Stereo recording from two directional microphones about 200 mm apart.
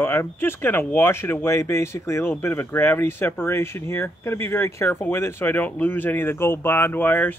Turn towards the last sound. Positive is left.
turn(degrees=10)  # may be behind; listen again after turning